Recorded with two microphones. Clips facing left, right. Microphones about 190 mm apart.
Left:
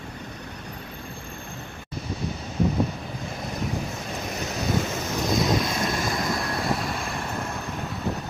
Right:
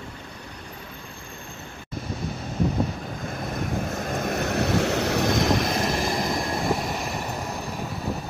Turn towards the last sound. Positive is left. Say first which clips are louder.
# even
turn(degrees=0)  # may be behind; listen again after turning